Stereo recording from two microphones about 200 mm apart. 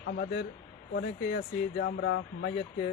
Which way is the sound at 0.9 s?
50° left (ahead or behind).